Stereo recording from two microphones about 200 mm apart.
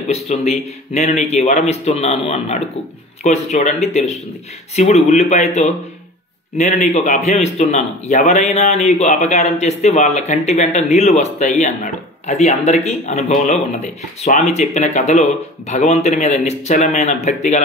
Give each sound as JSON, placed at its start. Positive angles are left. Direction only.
{"t": 0.1, "sound": "a man's voice", "side_deg": 35}